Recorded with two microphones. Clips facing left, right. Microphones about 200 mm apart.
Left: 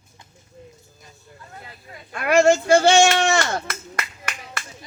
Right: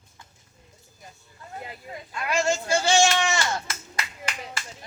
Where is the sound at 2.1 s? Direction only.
60° left (ahead or behind).